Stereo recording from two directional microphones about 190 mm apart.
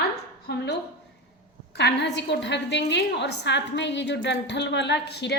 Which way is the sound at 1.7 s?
65° left (ahead or behind).